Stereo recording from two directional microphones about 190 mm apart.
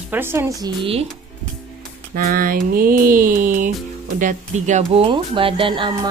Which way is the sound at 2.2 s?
50° right (ahead or behind).